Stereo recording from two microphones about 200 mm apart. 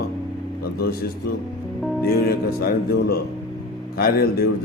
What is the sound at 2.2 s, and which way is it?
Speech, 50° left (ahead or behind).